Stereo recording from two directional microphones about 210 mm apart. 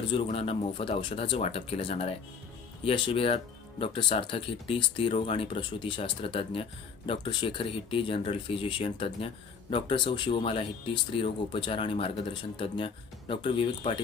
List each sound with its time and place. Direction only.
0.1 s speech: 25° left (ahead or behind)